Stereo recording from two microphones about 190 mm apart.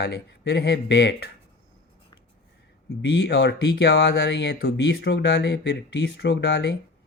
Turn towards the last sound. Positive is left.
turn(degrees=60)  # may be behind; listen again after turning